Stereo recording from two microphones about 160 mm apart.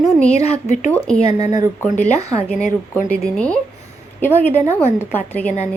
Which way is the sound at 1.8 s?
45° left (ahead or behind).